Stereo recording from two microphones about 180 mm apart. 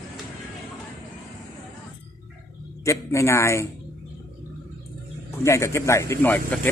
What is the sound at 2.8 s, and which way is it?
Speech, 15° left (ahead or behind).